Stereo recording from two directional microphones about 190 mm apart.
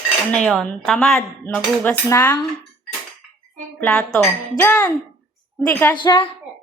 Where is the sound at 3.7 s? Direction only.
5° left (ahead or behind).